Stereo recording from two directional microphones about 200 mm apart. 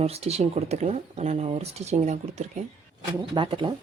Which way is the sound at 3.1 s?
25° right (ahead or behind).